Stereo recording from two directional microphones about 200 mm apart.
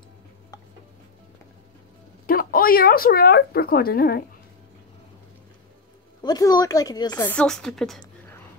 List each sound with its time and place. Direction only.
2.2 s speech: 45° left (ahead or behind)
6.2 s a woman's voice: 20° left (ahead or behind); by 8.0 s centre (ahead or behind)